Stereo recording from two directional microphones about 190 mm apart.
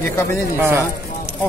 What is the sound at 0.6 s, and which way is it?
Speech, 15° right (ahead or behind).